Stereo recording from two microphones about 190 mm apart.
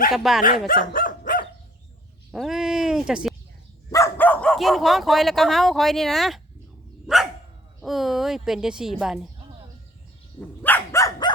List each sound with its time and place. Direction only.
0.1 s speech: centre (ahead or behind)
0.7 s dog: 45° left (ahead or behind)
2.3 s a sound: centre (ahead or behind)
3.9 s speech: 10° left (ahead or behind)
7.8 s speech: centre (ahead or behind)
10.6 s dog: 10° left (ahead or behind)